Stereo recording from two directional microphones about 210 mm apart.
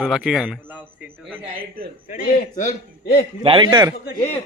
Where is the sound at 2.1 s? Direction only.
35° left (ahead or behind).